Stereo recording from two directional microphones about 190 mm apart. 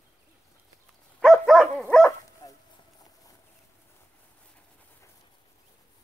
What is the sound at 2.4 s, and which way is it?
Dog, 20° left (ahead or behind).